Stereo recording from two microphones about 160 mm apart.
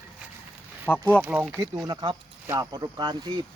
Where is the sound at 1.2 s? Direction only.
10° right (ahead or behind).